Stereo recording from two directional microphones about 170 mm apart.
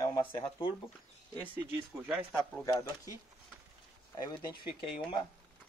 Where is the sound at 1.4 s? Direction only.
10° right (ahead or behind).